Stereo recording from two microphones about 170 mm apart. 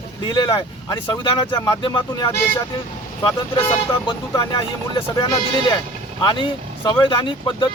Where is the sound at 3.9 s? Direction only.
25° left (ahead or behind).